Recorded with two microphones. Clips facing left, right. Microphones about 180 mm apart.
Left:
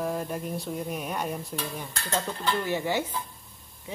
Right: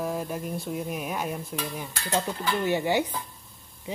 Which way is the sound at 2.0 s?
15° right (ahead or behind).